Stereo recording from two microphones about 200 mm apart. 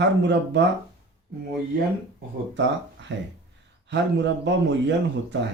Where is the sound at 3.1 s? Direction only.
60° right (ahead or behind).